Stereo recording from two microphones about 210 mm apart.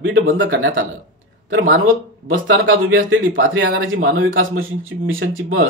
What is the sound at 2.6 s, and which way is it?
Speech, 65° right (ahead or behind).